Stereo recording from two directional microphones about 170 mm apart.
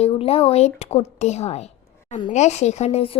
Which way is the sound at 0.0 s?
35° left (ahead or behind).